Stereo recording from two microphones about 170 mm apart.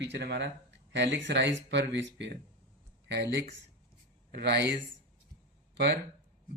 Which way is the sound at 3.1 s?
80° right.